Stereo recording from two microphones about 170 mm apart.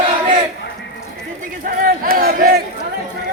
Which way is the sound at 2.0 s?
60° right (ahead or behind).